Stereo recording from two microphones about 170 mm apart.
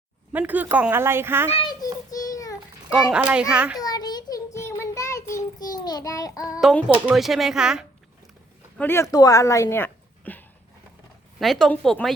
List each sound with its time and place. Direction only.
0.3 s speech: 10° right (ahead or behind)
1.5 s a child's voice: 35° left (ahead or behind)
1.8 s child singing: 20° left (ahead or behind)
2.9 s a child's voice: 5° right (ahead or behind)
3.8 s child singing: 20° left (ahead or behind)
6.6 s a child's voice: centre (ahead or behind)
8.8 s a child's voice: 15° left (ahead or behind)